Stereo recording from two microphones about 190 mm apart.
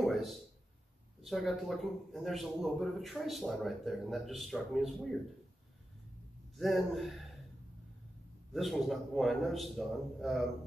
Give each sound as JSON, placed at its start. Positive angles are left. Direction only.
{"t": 0.0, "sound": "a sound", "side_deg": 0}
{"t": 1.2, "sound": "a man's voice", "side_deg": 0}
{"t": 6.5, "sound": "a man's voice", "side_deg": 0}
{"t": 8.5, "sound": "a man's voice", "side_deg": 0}